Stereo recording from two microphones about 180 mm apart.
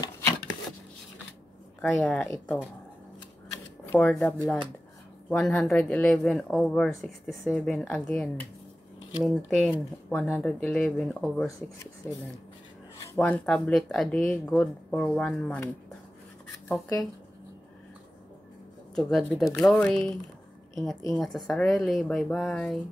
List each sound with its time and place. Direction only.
1.8 s speech: 5° left (ahead or behind)
3.8 s shuffling cards: 15° left (ahead or behind)
4.1 s speech: centre (ahead or behind)
13.0 s speech: 10° left (ahead or behind)
16.6 s speech: 5° left (ahead or behind)
18.9 s a woman's voice: centre (ahead or behind)